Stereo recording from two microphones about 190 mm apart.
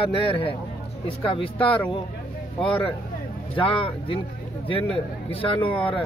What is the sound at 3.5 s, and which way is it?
Speech, 30° left (ahead or behind).